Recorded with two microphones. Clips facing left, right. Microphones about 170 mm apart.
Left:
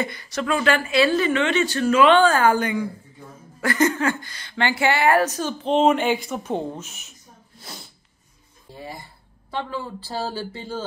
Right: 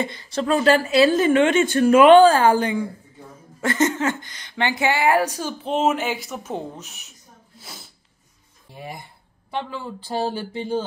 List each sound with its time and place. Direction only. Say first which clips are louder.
0.0 s speech: right 2 dB; 25° right (ahead or behind); by 2.3 s 45° right (ahead or behind)
2.3 s a woman's voice: right 1 dB; 30° right (ahead or behind); by 7.9 s centre (ahead or behind)
8.7 s a woman's voice: right 1 dB; 15° right (ahead or behind)